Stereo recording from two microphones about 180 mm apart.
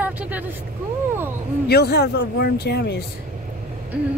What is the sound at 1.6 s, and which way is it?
Speech, 65° left (ahead or behind).